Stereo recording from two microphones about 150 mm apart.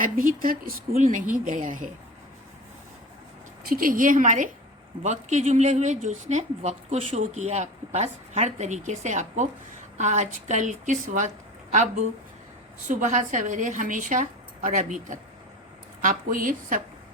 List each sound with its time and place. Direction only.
0.0 s a woman's voice: 65° right (ahead or behind)
3.7 s a woman's voice: 70° right (ahead or behind)